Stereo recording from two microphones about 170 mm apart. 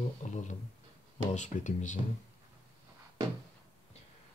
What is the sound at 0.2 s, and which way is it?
A man's voice, 45° left (ahead or behind).